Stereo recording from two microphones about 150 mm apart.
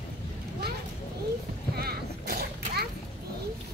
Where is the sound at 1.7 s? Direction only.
90° right.